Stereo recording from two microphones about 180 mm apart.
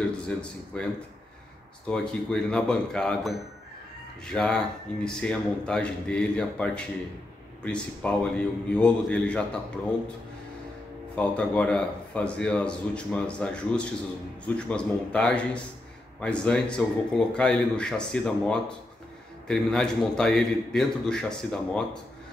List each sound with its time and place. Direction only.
0.7 s speech: 5° left (ahead or behind)
11.1 s speech: 5° left (ahead or behind)